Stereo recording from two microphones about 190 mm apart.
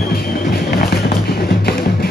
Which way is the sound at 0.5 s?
55° left (ahead or behind).